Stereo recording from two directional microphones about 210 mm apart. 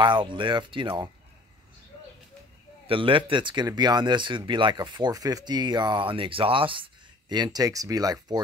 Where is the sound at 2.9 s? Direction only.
25° right (ahead or behind).